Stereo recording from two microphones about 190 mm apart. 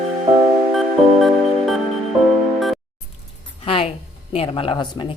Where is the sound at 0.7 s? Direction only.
Centre (ahead or behind).